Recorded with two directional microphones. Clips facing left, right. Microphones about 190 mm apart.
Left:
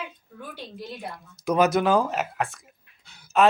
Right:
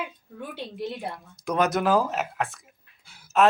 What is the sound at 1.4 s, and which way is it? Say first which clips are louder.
Speech: left 3 dB; 5° left (ahead or behind).